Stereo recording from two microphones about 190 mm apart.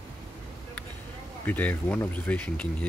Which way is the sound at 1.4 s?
10° left (ahead or behind).